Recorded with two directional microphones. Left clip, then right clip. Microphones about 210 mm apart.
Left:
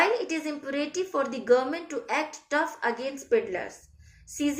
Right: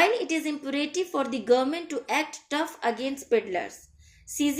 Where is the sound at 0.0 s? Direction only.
60° right (ahead or behind).